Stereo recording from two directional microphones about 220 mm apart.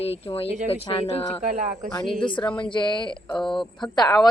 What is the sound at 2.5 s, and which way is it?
Speech, 20° left (ahead or behind).